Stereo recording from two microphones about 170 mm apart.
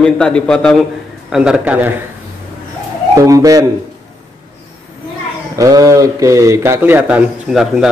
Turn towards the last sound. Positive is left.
turn(degrees=-5)  # may be behind; listen again after turning